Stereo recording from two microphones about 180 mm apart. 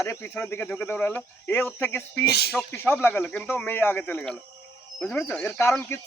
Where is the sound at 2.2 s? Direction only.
65° left (ahead or behind).